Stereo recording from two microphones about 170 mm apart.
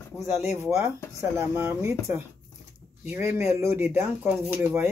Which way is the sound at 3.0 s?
10° right (ahead or behind).